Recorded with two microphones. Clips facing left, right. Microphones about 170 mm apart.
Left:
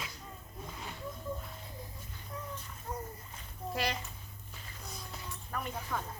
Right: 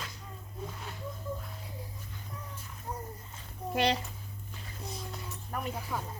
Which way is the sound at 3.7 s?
25° right (ahead or behind).